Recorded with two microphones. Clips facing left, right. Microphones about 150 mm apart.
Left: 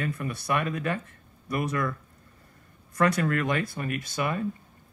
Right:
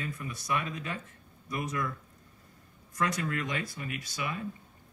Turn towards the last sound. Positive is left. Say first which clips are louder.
# left 7 dB
turn(degrees=55)  # may be behind; listen again after turning